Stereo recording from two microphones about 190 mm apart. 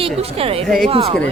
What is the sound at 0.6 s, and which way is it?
Speech, centre (ahead or behind).